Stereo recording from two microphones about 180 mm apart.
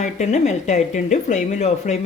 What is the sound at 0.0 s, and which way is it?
Speech, 40° left (ahead or behind).